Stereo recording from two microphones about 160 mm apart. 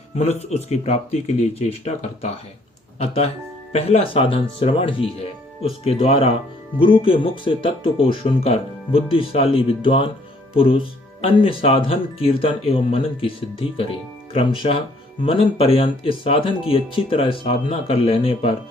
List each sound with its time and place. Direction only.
0.2 s speech: 45° left (ahead or behind)
3.7 s speech: 40° left (ahead or behind)